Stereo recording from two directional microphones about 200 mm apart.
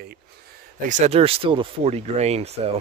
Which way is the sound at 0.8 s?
35° right (ahead or behind).